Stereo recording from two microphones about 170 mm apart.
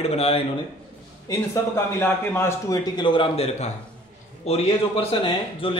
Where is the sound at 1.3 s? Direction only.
15° left (ahead or behind); by 5.8 s 30° left (ahead or behind).